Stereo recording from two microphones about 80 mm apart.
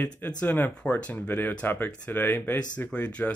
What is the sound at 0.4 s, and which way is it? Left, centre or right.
Speech, left.